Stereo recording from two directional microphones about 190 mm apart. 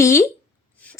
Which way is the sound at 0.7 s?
5° left (ahead or behind).